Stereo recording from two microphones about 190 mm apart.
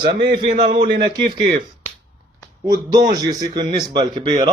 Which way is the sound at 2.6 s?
20° right (ahead or behind).